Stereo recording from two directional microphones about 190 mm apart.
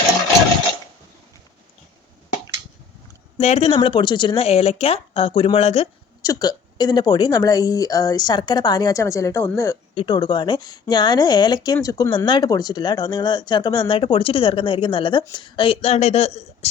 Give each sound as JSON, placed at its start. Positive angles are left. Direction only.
{"t": 3.3, "sound": "speech", "side_deg": 30}
{"t": 6.2, "sound": "a woman's voice", "side_deg": 20}
{"t": 9.9, "sound": "a woman's voice", "side_deg": 25}